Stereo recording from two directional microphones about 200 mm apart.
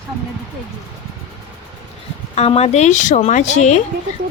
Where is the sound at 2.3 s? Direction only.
30° left (ahead or behind).